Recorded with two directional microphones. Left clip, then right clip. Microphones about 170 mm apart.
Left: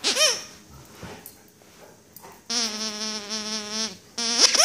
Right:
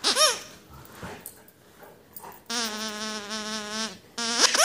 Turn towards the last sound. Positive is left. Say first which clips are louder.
# left 3 dB
turn(degrees=15)  # may be behind; listen again after turning